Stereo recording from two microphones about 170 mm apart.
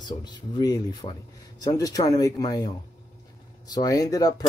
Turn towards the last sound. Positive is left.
turn(degrees=20)  # may be behind; listen again after turning